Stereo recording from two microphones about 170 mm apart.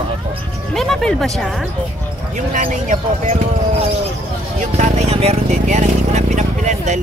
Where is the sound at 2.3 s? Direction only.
50° right (ahead or behind).